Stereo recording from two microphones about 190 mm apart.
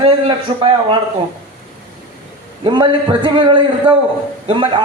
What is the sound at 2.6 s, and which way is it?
A man's voice, 25° right (ahead or behind).